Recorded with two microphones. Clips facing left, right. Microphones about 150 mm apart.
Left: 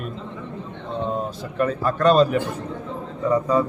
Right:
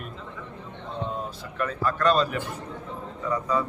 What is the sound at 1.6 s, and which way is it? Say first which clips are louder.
Speech: left 5 dB; 25° left (ahead or behind).